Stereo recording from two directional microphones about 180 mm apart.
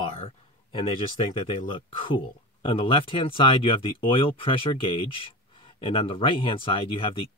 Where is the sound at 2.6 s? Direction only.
30° left (ahead or behind).